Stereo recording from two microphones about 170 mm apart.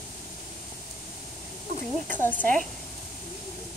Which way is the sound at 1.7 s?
50° right (ahead or behind).